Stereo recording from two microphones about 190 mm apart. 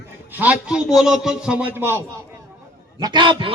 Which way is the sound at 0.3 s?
10° right (ahead or behind).